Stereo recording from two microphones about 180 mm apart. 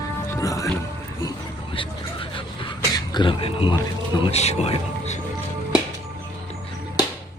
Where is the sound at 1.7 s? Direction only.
30° left (ahead or behind).